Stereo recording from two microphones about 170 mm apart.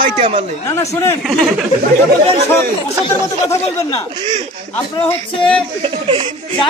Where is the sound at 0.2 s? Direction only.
40° right (ahead or behind).